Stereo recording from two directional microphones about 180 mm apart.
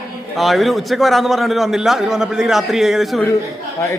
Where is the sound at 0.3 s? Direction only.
Centre (ahead or behind).